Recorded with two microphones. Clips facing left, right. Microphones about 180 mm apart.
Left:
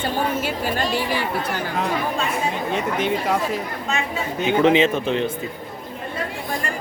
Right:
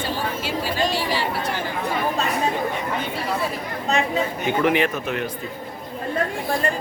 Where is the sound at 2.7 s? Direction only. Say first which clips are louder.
Left 5 dB; 85° left.